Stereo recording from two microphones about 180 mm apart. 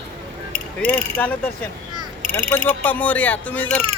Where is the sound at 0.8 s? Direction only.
10° left (ahead or behind).